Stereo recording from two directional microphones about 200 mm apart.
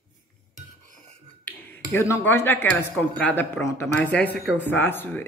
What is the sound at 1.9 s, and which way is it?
Speech, 10° left (ahead or behind).